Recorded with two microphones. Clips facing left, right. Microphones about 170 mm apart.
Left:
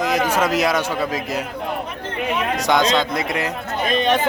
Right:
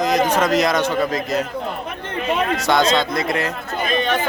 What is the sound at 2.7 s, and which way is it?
A man's voice, 15° left (ahead or behind).